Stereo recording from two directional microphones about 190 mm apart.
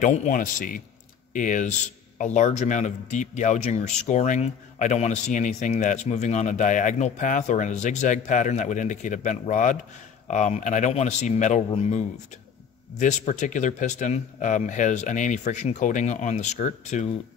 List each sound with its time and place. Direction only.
0.0 s a man's voice: 40° left (ahead or behind)
13.0 s speech: 40° left (ahead or behind)